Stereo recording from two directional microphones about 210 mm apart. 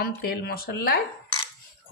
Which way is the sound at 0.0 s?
50° left (ahead or behind).